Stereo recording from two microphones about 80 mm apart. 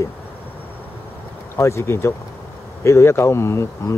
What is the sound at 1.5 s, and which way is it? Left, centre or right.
Speech, left.